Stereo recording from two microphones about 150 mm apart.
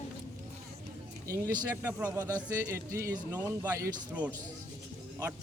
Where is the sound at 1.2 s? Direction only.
20° right (ahead or behind).